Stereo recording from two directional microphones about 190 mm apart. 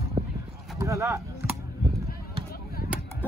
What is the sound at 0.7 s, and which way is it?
Speech, 15° right (ahead or behind).